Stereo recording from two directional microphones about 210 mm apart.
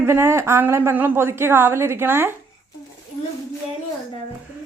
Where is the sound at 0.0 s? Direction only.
10° right (ahead or behind).